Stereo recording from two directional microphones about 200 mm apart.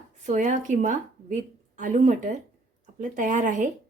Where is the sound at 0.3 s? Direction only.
40° right (ahead or behind).